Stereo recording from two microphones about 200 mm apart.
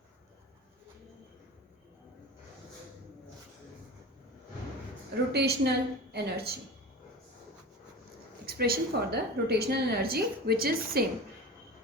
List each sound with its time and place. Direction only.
5.3 s a woman's voice: 55° right (ahead or behind)
8.4 s a woman's voice: 50° right (ahead or behind)